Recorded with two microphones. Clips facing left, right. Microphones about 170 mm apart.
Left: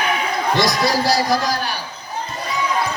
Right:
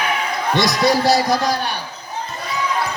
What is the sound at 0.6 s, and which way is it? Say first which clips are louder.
Speech: right 3 dB; 20° right (ahead or behind).